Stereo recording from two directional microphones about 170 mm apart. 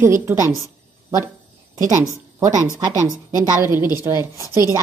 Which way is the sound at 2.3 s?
20° right (ahead or behind).